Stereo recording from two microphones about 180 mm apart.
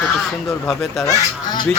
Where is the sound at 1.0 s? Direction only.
20° left (ahead or behind).